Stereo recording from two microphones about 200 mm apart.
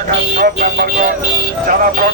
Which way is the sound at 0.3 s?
45° right (ahead or behind).